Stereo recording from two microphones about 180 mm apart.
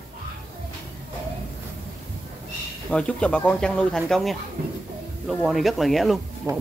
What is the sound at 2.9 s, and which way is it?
Speech, 5° left (ahead or behind).